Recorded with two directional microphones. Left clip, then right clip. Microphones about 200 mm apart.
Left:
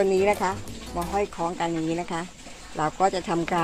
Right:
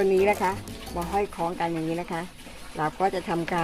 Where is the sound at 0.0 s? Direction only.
20° left (ahead or behind).